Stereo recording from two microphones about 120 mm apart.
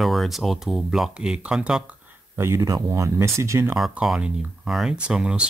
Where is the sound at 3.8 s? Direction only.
5° right (ahead or behind).